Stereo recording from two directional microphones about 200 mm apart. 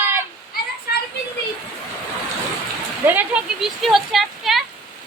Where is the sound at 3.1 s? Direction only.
5° right (ahead or behind).